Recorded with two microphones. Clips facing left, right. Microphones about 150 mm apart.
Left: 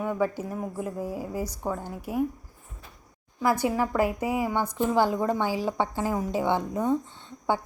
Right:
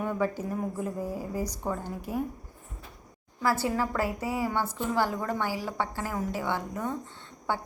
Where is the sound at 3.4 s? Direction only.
15° left (ahead or behind).